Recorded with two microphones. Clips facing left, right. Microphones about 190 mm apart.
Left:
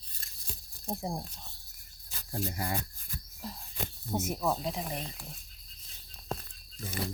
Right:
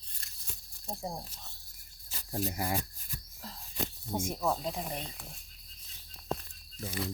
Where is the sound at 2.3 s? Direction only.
15° right (ahead or behind).